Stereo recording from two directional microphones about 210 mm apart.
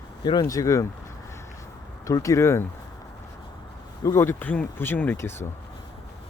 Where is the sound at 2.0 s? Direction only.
15° left (ahead or behind).